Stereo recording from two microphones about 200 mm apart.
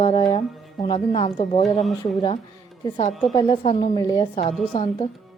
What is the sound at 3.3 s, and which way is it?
A woman's voice, 25° left (ahead or behind).